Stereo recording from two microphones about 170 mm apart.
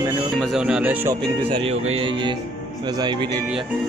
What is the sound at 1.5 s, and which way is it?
Speech, 30° right (ahead or behind).